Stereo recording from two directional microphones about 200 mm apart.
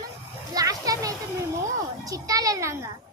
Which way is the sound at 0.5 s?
15° right (ahead or behind).